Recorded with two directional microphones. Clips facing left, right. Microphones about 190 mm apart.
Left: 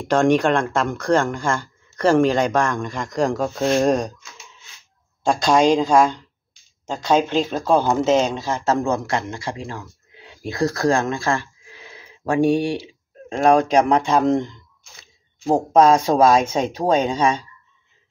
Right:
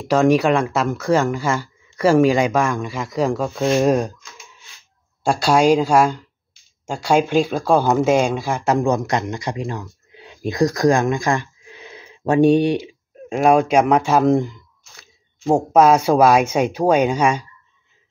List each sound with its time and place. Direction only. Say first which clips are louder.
0.0 s speech: right 1 dB; 5° right (ahead or behind)
5.2 s speech: right 1 dB; 10° right (ahead or behind)
13.3 s speech: right 1 dB; 10° right (ahead or behind)